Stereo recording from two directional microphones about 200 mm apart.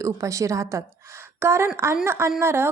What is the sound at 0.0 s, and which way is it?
A woman's voice, 15° right (ahead or behind).